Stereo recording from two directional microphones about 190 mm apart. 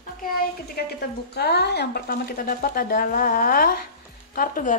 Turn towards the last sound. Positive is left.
turn(degrees=45)  # may be behind; listen again after turning